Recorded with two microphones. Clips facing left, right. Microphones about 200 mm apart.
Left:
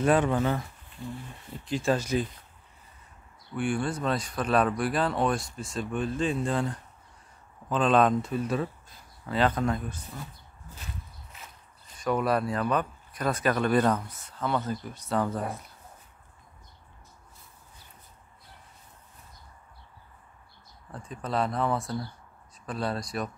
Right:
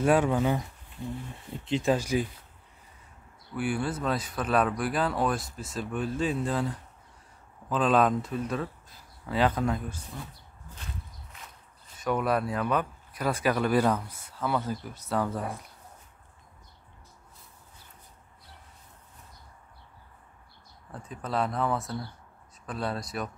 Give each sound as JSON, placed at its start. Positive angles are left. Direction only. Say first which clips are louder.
{"t": 0.0, "sound": "speech", "louder": "even", "side_deg": -10}
{"t": 3.5, "sound": "speech", "louder": "left 1 dB", "side_deg": -5}
{"t": 12.0, "sound": "speech", "louder": "left 1 dB", "side_deg": 0}
{"t": 20.9, "sound": "speech", "louder": "left 1 dB", "side_deg": -5}